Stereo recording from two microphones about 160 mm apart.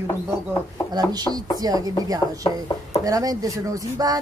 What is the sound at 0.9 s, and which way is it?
Speech, 25° right (ahead or behind).